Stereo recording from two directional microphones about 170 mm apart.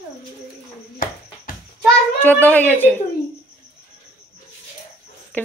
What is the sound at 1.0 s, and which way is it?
Music, 55° left (ahead or behind).